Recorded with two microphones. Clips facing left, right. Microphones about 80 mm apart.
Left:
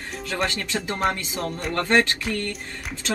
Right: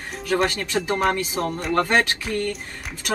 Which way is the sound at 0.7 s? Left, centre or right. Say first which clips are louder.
Right 4 dB; centre.